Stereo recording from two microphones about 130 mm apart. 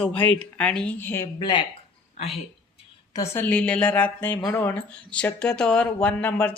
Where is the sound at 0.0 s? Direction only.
10° left (ahead or behind).